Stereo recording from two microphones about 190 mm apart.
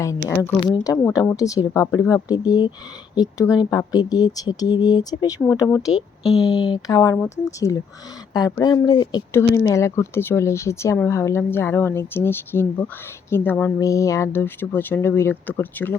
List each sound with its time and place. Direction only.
0.9 s speech: 15° left (ahead or behind)
6.5 s speech: 30° left (ahead or behind); by 16.0 s 10° left (ahead or behind)